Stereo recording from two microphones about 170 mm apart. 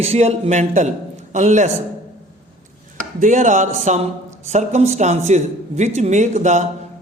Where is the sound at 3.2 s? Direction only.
45° right (ahead or behind).